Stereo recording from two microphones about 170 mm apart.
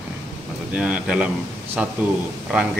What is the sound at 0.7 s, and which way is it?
Speech, 5° right (ahead or behind).